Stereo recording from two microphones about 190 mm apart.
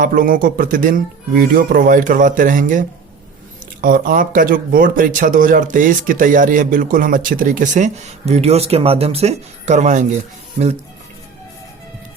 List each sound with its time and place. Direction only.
0.0 s speech: 50° right (ahead or behind)